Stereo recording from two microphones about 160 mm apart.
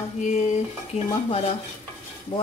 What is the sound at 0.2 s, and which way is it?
Speech, 50° left (ahead or behind).